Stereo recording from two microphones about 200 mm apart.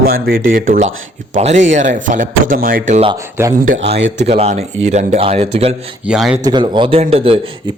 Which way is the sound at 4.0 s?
65° right (ahead or behind).